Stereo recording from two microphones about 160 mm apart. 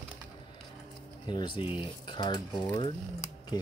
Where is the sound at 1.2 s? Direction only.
30° left (ahead or behind).